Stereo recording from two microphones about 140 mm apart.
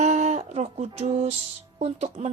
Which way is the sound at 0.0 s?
55° right (ahead or behind).